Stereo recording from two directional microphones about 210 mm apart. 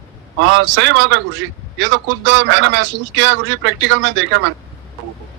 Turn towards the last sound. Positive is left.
turn(degrees=-65)  # may be behind; listen again after turning